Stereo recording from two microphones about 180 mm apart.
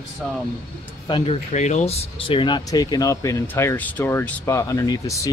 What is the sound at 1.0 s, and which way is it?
Speech, 30° left (ahead or behind).